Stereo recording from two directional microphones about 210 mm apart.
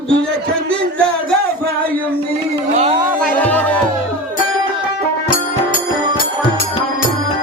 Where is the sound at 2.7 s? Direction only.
30° right (ahead or behind).